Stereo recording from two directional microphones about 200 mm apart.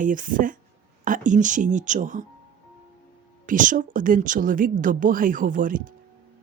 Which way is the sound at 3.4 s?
40° right (ahead or behind).